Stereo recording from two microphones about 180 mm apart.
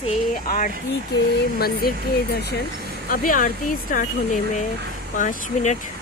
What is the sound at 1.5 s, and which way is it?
Speech, 60° left (ahead or behind).